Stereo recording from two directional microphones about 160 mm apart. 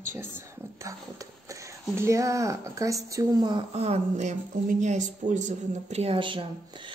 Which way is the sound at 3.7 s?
40° right (ahead or behind).